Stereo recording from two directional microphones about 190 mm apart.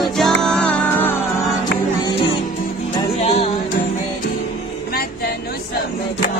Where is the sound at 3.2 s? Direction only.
30° left (ahead or behind).